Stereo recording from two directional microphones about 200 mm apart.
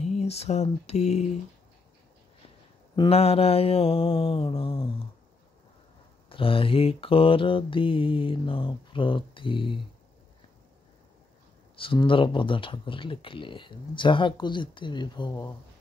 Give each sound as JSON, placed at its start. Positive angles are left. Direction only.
{"t": 0.0, "sound": "speech", "side_deg": 35}
{"t": 3.0, "sound": "speech", "side_deg": 30}
{"t": 6.2, "sound": "speech", "side_deg": 25}
{"t": 11.7, "sound": "speech", "side_deg": 25}